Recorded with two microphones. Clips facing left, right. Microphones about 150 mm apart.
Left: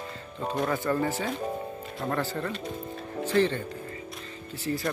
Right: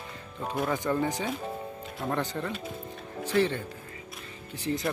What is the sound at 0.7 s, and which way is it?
Speech, 15° right (ahead or behind).